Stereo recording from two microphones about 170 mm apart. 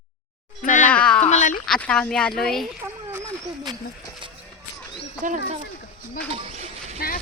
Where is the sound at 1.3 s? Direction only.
45° left (ahead or behind).